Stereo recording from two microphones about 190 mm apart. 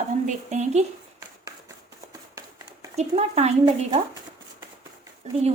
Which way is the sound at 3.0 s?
35° right (ahead or behind).